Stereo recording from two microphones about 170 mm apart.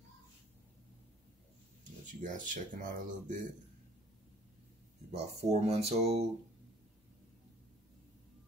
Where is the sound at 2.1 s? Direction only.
50° right (ahead or behind).